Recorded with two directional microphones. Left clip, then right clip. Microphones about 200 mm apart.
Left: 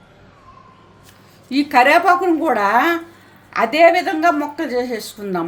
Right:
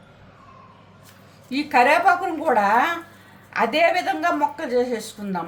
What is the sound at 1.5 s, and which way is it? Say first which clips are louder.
A woman's voice: left 5 dB; 35° left (ahead or behind).